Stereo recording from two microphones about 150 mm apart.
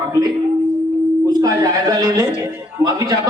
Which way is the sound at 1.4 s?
25° right (ahead or behind).